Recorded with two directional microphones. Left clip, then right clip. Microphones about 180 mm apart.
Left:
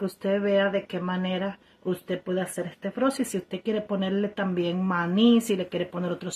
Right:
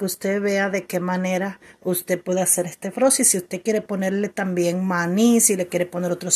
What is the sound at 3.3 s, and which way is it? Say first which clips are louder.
Speech: right 7 dB; 30° right (ahead or behind).